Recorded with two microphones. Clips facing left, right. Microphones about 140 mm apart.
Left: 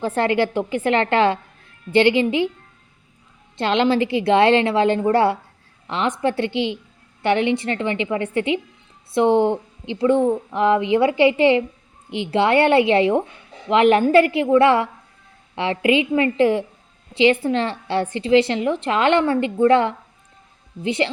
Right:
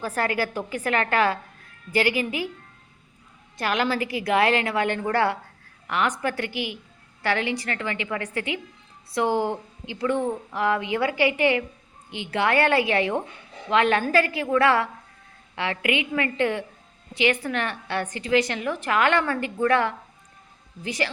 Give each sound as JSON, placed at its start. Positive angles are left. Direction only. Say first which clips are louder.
{"t": 0.0, "sound": "a woman's voice", "louder": "left 7 dB", "side_deg": 25}
{"t": 3.6, "sound": "a woman's voice", "louder": "left 7 dB", "side_deg": 25}